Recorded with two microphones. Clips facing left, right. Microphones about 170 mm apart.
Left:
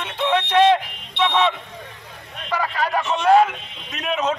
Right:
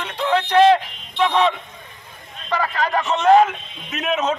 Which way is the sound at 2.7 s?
10° left (ahead or behind).